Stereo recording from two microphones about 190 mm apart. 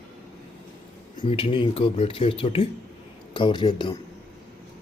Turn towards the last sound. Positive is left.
turn(degrees=25)  # may be behind; listen again after turning